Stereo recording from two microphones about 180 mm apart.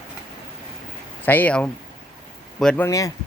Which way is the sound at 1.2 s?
10° left (ahead or behind).